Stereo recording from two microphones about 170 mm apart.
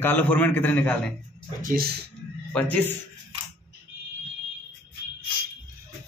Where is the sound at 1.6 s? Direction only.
55° right (ahead or behind).